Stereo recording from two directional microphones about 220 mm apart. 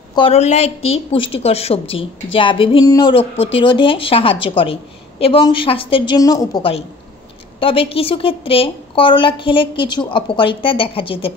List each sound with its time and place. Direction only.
0.1 s a woman's voice: 25° left (ahead or behind)